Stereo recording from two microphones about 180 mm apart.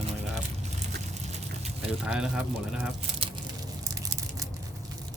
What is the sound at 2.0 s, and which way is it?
Speech, 5° right (ahead or behind).